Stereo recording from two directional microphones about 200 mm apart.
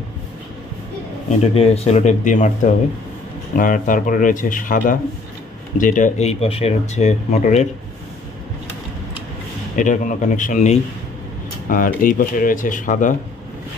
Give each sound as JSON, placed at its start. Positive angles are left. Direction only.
{"t": 1.4, "sound": "speech", "side_deg": 30}
{"t": 9.8, "sound": "speech", "side_deg": 40}